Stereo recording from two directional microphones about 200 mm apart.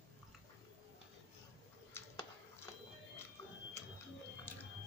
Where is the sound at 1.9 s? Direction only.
15° left (ahead or behind).